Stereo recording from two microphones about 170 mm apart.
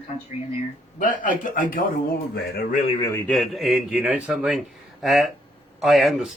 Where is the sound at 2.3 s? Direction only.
65° left (ahead or behind).